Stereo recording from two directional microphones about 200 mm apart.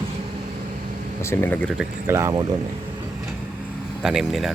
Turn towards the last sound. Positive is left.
turn(degrees=0)  # may be behind; listen again after turning